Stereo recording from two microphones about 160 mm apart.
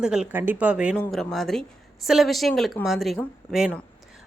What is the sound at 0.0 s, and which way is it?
Speech, 5° right (ahead or behind).